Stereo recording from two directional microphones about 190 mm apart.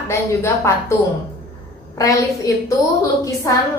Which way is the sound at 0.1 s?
15° left (ahead or behind).